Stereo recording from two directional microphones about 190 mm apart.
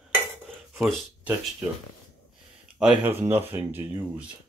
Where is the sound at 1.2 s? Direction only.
5° right (ahead or behind).